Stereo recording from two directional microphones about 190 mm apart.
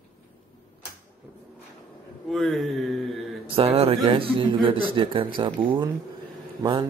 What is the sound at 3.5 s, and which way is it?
Mantra, 30° right (ahead or behind).